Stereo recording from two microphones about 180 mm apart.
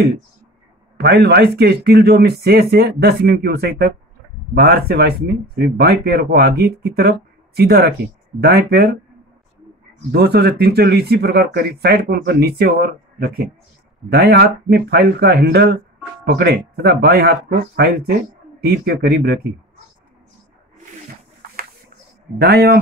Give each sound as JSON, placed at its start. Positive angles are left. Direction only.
{"t": 0.9, "sound": "speech", "side_deg": -65}
{"t": 10.1, "sound": "speech", "side_deg": -65}
{"t": 22.4, "sound": "speech", "side_deg": -60}